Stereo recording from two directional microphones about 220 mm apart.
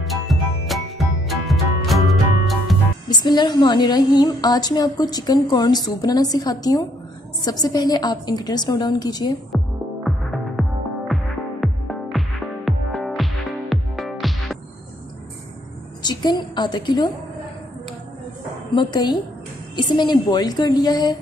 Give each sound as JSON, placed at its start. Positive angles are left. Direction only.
{"t": 0.0, "sound": "music", "side_deg": 0}
{"t": 3.1, "sound": "a woman's voice", "side_deg": 20}
{"t": 10.0, "sound": "music", "side_deg": 0}
{"t": 11.6, "sound": "music", "side_deg": 0}
{"t": 16.0, "sound": "a woman's voice", "side_deg": 20}
{"t": 18.8, "sound": "a woman's voice", "side_deg": 20}